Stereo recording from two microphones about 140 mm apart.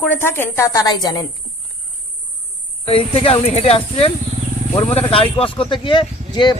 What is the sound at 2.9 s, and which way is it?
Speech, 45° left (ahead or behind).